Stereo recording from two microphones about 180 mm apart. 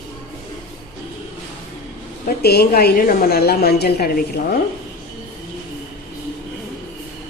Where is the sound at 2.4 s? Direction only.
60° left (ahead or behind).